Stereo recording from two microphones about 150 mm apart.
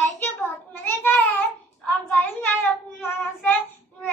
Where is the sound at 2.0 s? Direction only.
10° left (ahead or behind).